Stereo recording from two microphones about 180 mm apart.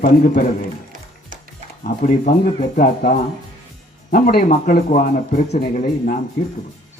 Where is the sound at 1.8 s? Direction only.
45° left (ahead or behind).